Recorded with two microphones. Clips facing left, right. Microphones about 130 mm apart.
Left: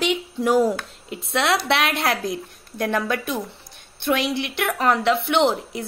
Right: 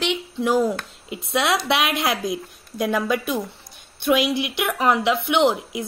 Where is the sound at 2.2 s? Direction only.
15° right (ahead or behind).